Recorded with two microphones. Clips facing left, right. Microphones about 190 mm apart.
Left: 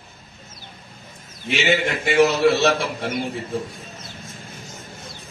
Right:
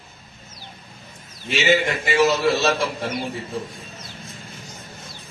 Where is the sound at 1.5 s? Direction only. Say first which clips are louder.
Right 1 dB; 60° left (ahead or behind).